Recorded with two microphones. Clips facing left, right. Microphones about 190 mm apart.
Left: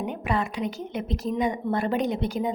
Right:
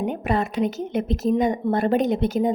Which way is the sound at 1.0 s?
25° right (ahead or behind).